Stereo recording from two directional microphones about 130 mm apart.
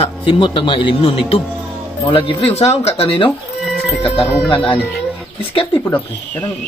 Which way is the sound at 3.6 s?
5° left (ahead or behind).